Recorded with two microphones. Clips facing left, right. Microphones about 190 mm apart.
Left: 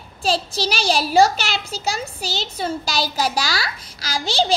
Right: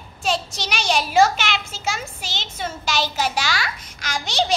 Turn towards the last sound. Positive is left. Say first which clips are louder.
# left 2 dB
turn(degrees=30)  # may be behind; listen again after turning